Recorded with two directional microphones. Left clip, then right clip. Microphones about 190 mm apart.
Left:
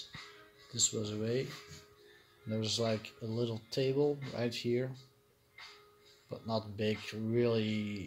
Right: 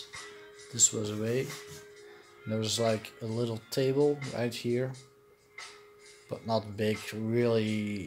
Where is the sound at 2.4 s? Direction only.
10° right (ahead or behind).